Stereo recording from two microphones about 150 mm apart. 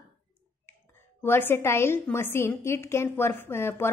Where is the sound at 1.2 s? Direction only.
15° left (ahead or behind).